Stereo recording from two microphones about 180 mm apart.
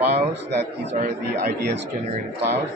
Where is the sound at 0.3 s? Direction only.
70° right (ahead or behind).